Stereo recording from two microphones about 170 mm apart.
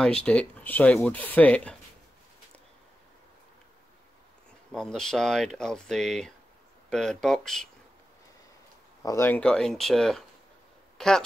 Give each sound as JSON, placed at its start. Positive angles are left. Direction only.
{"t": 0.0, "sound": "speech", "side_deg": 5}
{"t": 4.7, "sound": "speech", "side_deg": 5}
{"t": 9.0, "sound": "speech", "side_deg": 15}